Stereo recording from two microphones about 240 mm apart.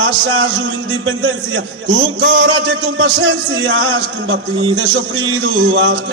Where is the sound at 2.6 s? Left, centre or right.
Right.